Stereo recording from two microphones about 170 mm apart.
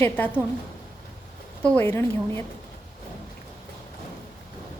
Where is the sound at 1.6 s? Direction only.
10° left (ahead or behind).